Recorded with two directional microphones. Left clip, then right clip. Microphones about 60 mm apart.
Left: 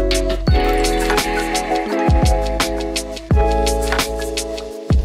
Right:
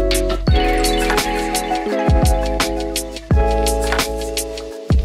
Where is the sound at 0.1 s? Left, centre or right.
Centre.